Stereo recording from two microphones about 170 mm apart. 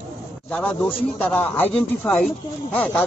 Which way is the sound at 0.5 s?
5° left (ahead or behind).